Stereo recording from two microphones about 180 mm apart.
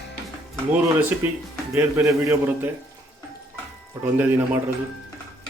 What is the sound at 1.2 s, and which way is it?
A man's voice, 10° right (ahead or behind).